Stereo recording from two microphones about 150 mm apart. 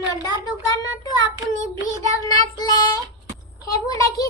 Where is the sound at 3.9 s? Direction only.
25° left (ahead or behind).